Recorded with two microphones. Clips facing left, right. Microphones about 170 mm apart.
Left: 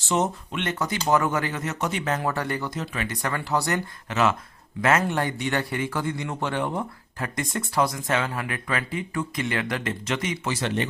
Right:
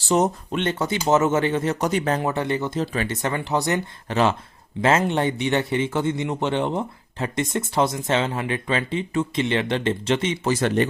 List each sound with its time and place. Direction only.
0.0 s speech: 35° right (ahead or behind)
2.2 s speech: 20° right (ahead or behind)
4.1 s speech: 30° right (ahead or behind)
10.5 s speech: 45° right (ahead or behind)